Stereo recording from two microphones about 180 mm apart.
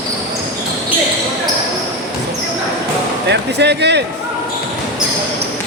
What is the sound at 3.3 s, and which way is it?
Music, 70° right (ahead or behind).